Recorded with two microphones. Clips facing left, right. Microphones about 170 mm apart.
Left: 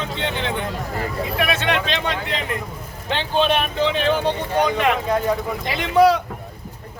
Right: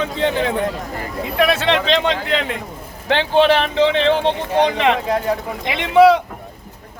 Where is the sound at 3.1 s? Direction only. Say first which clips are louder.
Right 6 dB; 75° right (ahead or behind).